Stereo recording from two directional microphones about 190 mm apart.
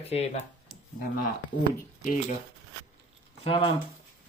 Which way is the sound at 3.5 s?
30° left (ahead or behind).